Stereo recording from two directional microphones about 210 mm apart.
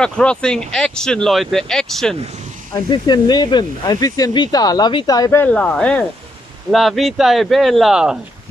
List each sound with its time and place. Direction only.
0.0 s speech: 5° left (ahead or behind)
2.9 s speech: 20° left (ahead or behind); by 8.2 s 5° right (ahead or behind)